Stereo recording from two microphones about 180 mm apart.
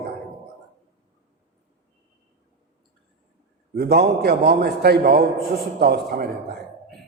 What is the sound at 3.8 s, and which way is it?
A man's voice, 60° right (ahead or behind).